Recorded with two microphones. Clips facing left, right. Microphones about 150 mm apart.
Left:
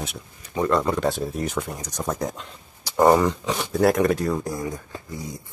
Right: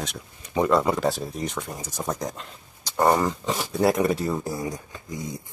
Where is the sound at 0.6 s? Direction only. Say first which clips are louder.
Left 1 dB; 5° right (ahead or behind).